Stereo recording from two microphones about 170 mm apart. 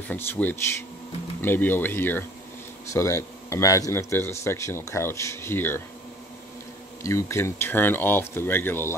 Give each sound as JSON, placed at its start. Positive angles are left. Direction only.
{"t": 0.1, "sound": "speech", "side_deg": 10}
{"t": 7.0, "sound": "speech", "side_deg": 15}